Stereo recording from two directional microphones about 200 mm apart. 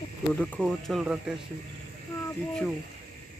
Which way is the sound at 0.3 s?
5° left (ahead or behind).